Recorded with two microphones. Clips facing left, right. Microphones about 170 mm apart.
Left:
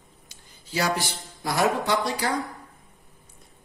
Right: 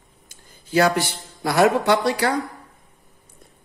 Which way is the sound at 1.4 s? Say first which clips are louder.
Right 6 dB; 70° right (ahead or behind).